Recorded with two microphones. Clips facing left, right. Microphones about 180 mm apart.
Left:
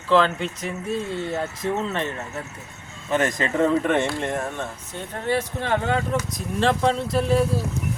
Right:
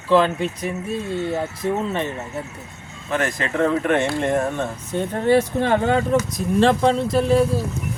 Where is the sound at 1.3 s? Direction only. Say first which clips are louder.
Right 1 dB; 15° right (ahead or behind).